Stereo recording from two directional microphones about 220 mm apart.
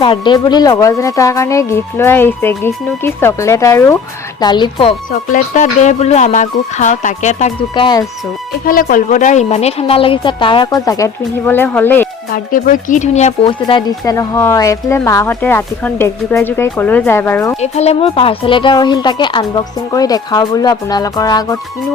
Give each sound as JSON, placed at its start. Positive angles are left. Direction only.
{"t": 0.0, "sound": "speech", "side_deg": 20}
{"t": 5.1, "sound": "speech", "side_deg": 35}
{"t": 12.3, "sound": "speech", "side_deg": 40}
{"t": 17.6, "sound": "speech", "side_deg": 30}